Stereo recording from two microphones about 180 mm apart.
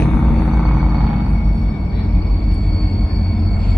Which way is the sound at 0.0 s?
Centre (ahead or behind).